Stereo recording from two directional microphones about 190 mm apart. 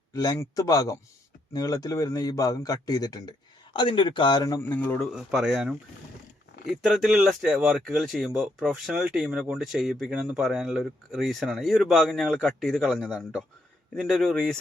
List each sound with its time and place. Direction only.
0.1 s a man's voice: 20° left (ahead or behind)
5.1 s speech: 5° right (ahead or behind)
6.8 s speech: centre (ahead or behind)